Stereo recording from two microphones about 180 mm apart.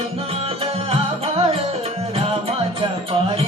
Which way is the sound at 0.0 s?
35° right (ahead or behind).